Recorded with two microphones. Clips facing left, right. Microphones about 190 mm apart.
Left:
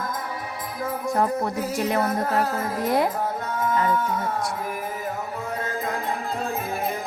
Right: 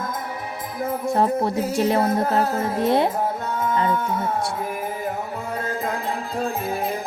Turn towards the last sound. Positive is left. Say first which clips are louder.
# right 2 dB
turn(degrees=-30)  # may be behind; listen again after turning